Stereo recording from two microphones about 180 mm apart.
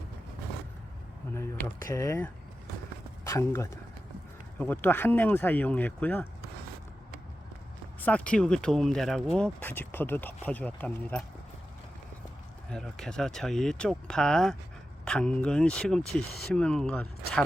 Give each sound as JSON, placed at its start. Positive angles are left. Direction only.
{"t": 1.3, "sound": "speech", "side_deg": 15}
{"t": 8.0, "sound": "speech", "side_deg": 5}
{"t": 12.7, "sound": "speech", "side_deg": 5}